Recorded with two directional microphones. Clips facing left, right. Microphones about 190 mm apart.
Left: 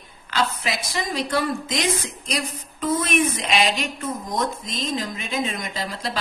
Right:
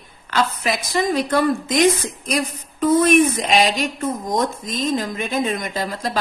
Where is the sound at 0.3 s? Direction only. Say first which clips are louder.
Right 4 dB; 50° right (ahead or behind).